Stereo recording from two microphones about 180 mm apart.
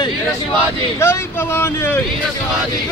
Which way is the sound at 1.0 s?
15° left (ahead or behind).